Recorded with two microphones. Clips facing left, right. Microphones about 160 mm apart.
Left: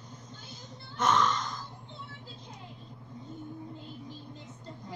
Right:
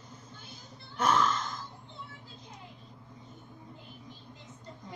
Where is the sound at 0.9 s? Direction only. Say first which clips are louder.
Even; 5° right (ahead or behind).